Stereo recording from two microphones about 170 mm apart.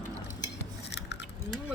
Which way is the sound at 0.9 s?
85° left.